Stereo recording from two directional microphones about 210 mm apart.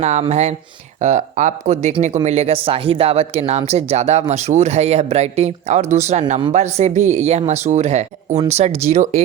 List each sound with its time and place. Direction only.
0.0 s speech: 35° right (ahead or behind)